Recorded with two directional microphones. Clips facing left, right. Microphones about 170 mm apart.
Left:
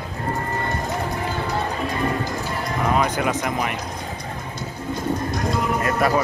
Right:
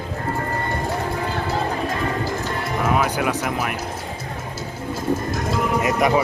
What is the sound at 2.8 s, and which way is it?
Speech, 5° right (ahead or behind).